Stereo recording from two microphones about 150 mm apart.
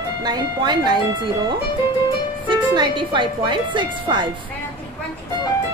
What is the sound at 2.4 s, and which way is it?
Speech, 30° right (ahead or behind).